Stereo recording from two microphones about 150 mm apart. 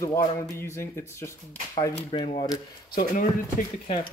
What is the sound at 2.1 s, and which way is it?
Speech, 35° left (ahead or behind).